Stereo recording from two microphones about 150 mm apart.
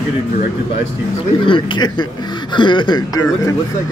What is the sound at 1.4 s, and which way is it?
Speech, 30° left (ahead or behind).